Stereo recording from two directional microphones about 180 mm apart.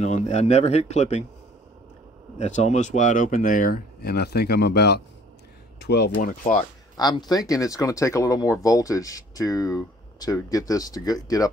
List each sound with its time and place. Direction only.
0.0 s speech: 40° left (ahead or behind)
2.3 s speech: 40° left (ahead or behind)
7.0 s speech: 20° left (ahead or behind)